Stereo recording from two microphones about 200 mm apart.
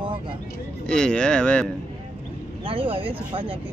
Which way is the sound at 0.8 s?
5° left (ahead or behind).